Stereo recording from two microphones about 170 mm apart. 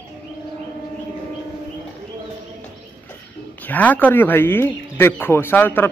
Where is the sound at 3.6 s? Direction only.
10° left (ahead or behind).